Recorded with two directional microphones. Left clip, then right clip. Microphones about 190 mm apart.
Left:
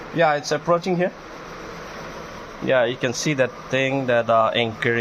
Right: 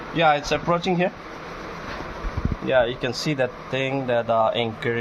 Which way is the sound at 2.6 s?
30° left (ahead or behind).